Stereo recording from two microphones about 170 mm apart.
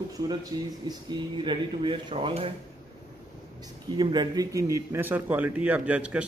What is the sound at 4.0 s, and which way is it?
A man's voice, 25° right (ahead or behind).